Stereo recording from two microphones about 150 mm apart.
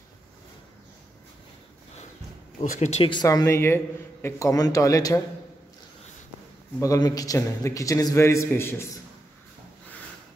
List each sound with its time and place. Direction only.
2.8 s speech: 45° left (ahead or behind)
3.1 s a man's voice: 25° left (ahead or behind)
6.8 s a man's voice: 20° left (ahead or behind)